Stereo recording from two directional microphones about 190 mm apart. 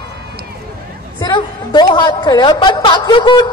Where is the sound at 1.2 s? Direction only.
25° left (ahead or behind).